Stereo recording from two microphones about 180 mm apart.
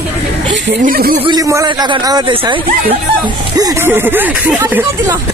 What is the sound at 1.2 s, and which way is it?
A man's voice, 20° right (ahead or behind).